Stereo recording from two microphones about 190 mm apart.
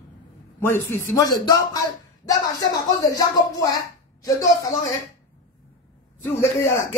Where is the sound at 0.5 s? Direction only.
10° left (ahead or behind).